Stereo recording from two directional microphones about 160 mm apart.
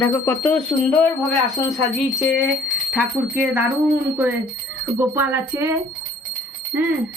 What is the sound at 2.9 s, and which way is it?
Speech, 10° right (ahead or behind).